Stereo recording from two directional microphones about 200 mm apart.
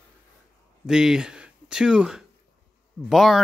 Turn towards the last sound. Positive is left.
turn(degrees=0)  # may be behind; listen again after turning